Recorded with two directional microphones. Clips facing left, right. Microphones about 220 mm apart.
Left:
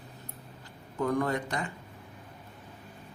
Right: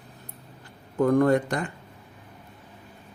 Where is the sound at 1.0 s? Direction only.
50° right (ahead or behind).